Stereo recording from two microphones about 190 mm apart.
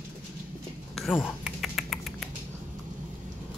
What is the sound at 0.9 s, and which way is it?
Typing, centre (ahead or behind).